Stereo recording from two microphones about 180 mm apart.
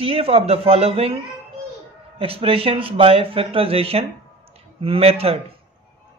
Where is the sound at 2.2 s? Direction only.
30° right (ahead or behind).